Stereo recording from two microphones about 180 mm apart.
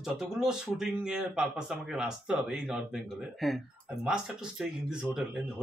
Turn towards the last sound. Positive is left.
turn(degrees=-5)  # may be behind; listen again after turning